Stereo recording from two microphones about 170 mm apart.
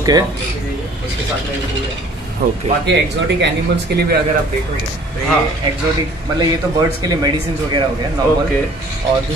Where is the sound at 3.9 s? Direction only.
75° right (ahead or behind).